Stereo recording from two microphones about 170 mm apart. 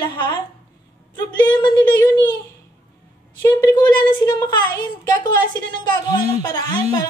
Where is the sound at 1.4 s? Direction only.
25° left (ahead or behind).